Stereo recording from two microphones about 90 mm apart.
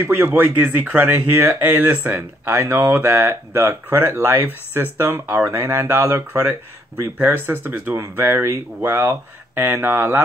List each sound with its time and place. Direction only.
0.0 s speech: 20° right (ahead or behind)